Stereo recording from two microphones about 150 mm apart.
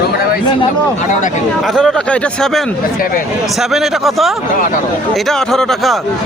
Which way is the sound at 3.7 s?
Centre (ahead or behind).